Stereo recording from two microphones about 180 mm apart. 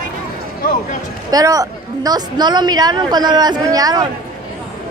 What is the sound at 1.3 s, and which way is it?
A woman's voice, 20° right (ahead or behind).